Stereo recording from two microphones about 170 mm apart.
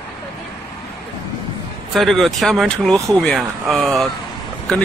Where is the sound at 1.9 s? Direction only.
Centre (ahead or behind).